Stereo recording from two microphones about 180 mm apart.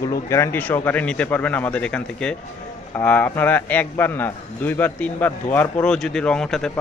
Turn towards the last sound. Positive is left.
turn(degrees=5)  # may be behind; listen again after turning